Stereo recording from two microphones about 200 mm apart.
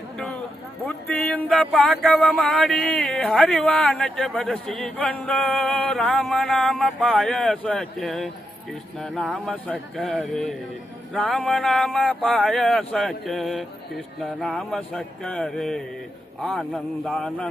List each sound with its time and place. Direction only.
0.9 s speech: 5° left (ahead or behind)